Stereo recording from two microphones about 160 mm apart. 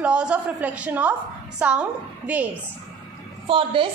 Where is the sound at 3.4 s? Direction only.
35° right (ahead or behind).